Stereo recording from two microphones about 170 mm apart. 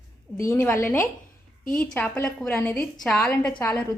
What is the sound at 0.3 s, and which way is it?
A woman's voice, 15° left (ahead or behind).